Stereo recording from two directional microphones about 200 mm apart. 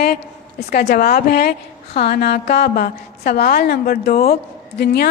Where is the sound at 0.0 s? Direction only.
50° left (ahead or behind).